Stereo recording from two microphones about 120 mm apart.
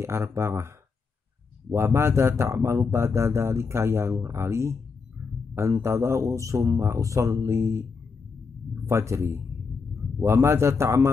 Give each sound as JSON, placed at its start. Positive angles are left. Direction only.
{"t": 0.0, "sound": "speech", "side_deg": -20}
{"t": 1.7, "sound": "speech", "side_deg": -20}
{"t": 8.8, "sound": "speech", "side_deg": -25}